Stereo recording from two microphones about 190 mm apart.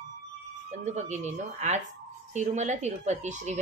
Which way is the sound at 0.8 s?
40° right (ahead or behind).